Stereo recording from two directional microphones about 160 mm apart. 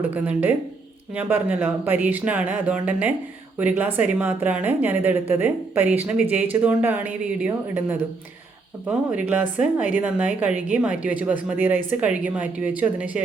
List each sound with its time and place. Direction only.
0.1 s speech: 10° right (ahead or behind)